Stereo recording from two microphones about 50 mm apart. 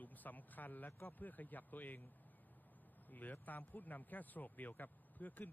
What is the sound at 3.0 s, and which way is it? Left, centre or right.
Speech, left.